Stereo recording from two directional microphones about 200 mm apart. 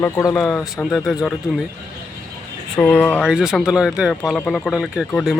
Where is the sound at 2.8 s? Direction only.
5° left (ahead or behind).